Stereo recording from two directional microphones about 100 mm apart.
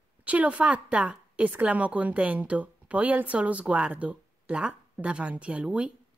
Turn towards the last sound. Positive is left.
turn(degrees=-10)  # may be behind; listen again after turning